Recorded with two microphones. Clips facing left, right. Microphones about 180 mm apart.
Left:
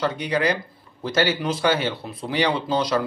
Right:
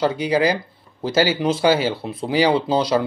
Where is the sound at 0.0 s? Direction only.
30° right (ahead or behind).